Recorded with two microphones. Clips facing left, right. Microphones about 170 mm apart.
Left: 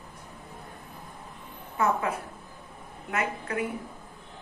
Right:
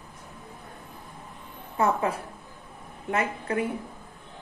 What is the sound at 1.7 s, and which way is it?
Speech, 30° right (ahead or behind).